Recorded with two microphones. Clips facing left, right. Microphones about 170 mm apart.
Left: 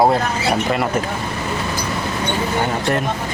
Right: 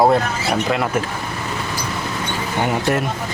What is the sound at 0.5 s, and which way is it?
Speech, 5° left (ahead or behind).